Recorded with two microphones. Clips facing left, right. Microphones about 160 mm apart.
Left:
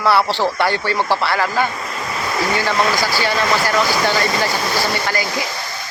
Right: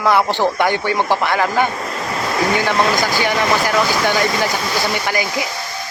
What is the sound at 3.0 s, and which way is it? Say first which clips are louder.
Speech: right 1 dB; 15° right (ahead or behind).